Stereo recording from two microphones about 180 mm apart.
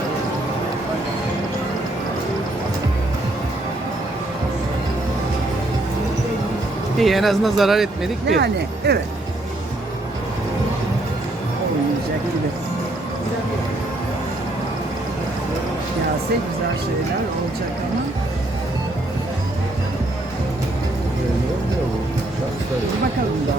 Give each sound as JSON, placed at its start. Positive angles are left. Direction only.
{"t": 7.0, "sound": "speech", "side_deg": 0}
{"t": 8.4, "sound": "speech", "side_deg": -65}